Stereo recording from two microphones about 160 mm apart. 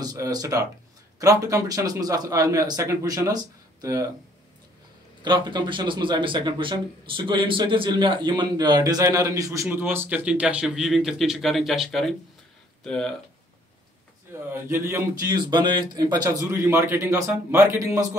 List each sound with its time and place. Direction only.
0.0 s speech: 25° right (ahead or behind)
5.2 s speech: 30° right (ahead or behind); by 13.1 s 5° left (ahead or behind)
14.5 s speech: 15° right (ahead or behind)